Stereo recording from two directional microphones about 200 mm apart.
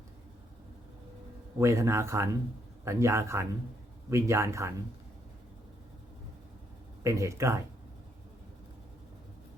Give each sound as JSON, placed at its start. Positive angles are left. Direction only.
{"t": 1.5, "sound": "speech", "side_deg": -15}
{"t": 7.0, "sound": "speech", "side_deg": -15}